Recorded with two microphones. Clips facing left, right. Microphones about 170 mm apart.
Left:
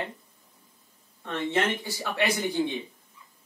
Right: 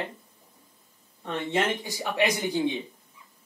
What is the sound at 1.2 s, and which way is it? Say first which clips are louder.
Speech: even; 15° right (ahead or behind).